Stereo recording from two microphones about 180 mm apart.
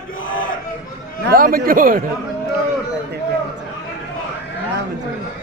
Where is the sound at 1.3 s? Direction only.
55° right (ahead or behind).